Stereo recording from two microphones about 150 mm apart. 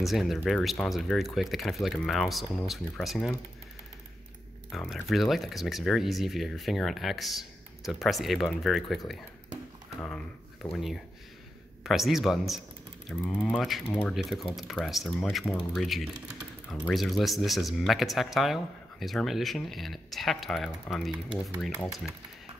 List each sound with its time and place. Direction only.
0.0 s speech: centre (ahead or behind)
4.6 s speech: centre (ahead or behind)
11.8 s speech: centre (ahead or behind)
13.1 s mechanisms: 10° left (ahead or behind)
14.1 s speech: centre (ahead or behind)